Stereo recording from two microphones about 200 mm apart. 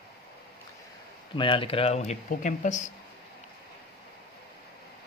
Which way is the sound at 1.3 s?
25° left (ahead or behind).